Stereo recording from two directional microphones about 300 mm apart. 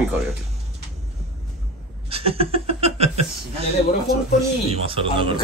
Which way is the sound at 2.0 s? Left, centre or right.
Centre.